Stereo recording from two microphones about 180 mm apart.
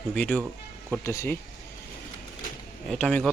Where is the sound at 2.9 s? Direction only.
5° left (ahead or behind).